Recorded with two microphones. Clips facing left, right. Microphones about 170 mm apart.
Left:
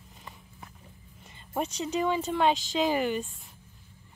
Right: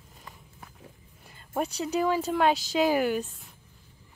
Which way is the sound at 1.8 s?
Centre (ahead or behind).